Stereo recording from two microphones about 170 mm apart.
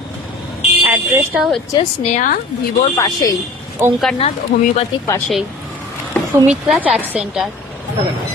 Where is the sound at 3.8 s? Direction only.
15° right (ahead or behind).